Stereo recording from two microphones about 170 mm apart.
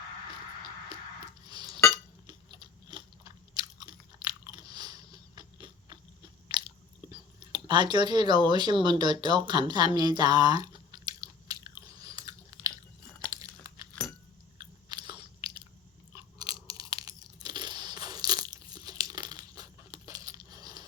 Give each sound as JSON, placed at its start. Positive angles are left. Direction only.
{"t": 1.5, "sound": "cutlery", "side_deg": -25}
{"t": 2.2, "sound": "chewing", "side_deg": -25}
{"t": 13.3, "sound": "crumpling", "side_deg": -20}
{"t": 14.6, "sound": "biting", "side_deg": -25}
{"t": 16.1, "sound": "chewing", "side_deg": -20}
{"t": 16.6, "sound": "crunch", "side_deg": -20}
{"t": 19.0, "sound": "a sound", "side_deg": -25}